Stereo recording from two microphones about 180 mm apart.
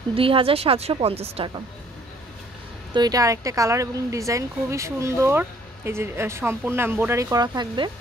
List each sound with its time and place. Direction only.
0.1 s a woman's voice: 30° right (ahead or behind)
2.9 s a woman's voice: 20° right (ahead or behind)